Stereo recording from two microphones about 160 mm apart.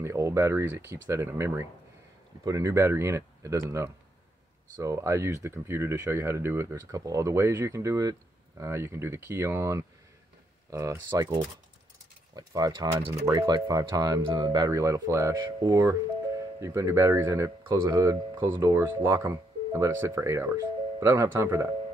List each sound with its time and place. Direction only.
0.0 s speech: 15° right (ahead or behind)
12.4 s speech: 25° right (ahead or behind)